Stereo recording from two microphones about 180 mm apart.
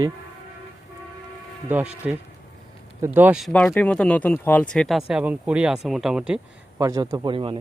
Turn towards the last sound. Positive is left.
turn(degrees=-30)  # may be behind; listen again after turning